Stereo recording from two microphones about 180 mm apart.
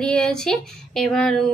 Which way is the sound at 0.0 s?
5° left (ahead or behind).